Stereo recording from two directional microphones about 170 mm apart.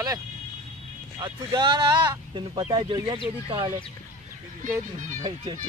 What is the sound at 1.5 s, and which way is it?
Speech, 25° right (ahead or behind).